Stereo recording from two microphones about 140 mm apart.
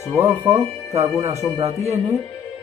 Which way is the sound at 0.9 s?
50° right (ahead or behind).